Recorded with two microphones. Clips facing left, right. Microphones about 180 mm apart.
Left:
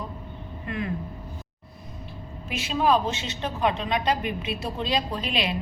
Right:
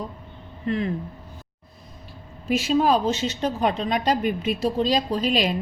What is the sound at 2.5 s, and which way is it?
A woman's voice, 40° right (ahead or behind).